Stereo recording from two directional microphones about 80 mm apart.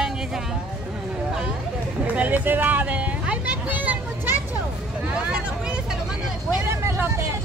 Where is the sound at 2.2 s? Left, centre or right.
Right.